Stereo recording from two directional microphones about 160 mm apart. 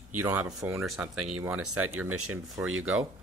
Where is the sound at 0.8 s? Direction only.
Centre (ahead or behind).